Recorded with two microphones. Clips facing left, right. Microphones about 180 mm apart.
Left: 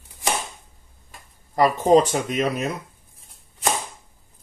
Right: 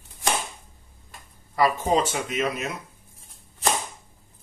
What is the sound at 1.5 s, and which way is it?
Speech, 45° left (ahead or behind).